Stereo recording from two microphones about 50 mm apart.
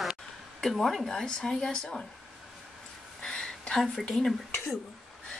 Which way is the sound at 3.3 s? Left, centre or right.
Centre.